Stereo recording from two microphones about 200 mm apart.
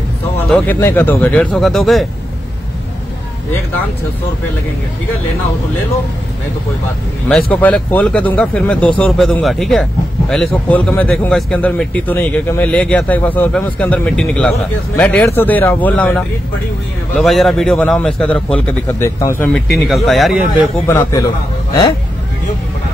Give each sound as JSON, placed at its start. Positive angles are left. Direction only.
{"t": 0.5, "sound": "a man's voice", "side_deg": 5}
{"t": 7.6, "sound": "a man's voice", "side_deg": 5}
{"t": 19.9, "sound": "a man's voice", "side_deg": 0}
{"t": 20.8, "sound": "a man's voice", "side_deg": 15}